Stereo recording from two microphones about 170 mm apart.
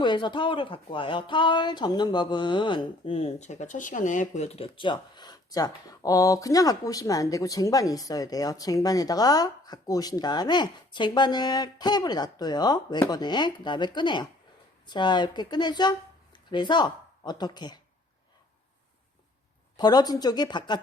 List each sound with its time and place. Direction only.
0.0 s speech: 25° left (ahead or behind)
19.7 s speech: 25° left (ahead or behind)